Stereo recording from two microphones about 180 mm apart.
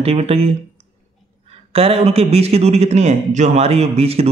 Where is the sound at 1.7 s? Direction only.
35° right (ahead or behind).